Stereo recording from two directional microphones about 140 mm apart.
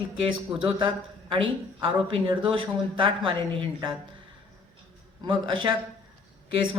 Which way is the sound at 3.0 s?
40° right (ahead or behind).